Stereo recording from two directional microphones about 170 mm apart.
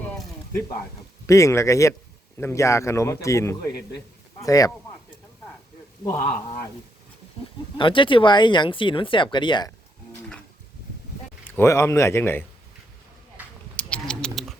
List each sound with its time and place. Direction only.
1.3 s speech: 20° left (ahead or behind)
7.8 s speech: 30° left (ahead or behind)
11.4 s speech: 10° left (ahead or behind)
13.4 s a sound: 10° right (ahead or behind)
13.7 s sheep: 5° left (ahead or behind)